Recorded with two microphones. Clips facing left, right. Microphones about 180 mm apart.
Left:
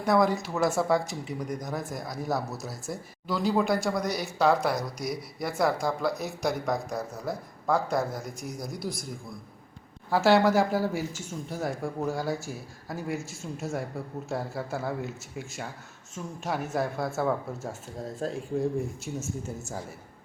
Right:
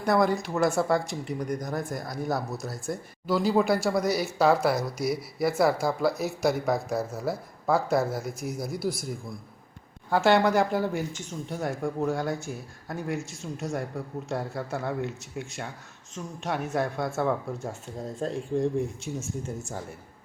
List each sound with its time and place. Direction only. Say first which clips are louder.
0.0 s speech: even; centre (ahead or behind)
10.1 s speech: even; centre (ahead or behind)